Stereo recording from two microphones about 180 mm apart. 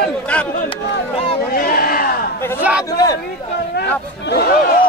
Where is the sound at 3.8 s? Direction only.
65° left (ahead or behind).